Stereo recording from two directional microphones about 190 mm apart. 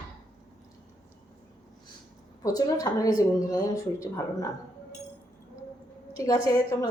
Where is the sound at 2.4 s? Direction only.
20° left (ahead or behind).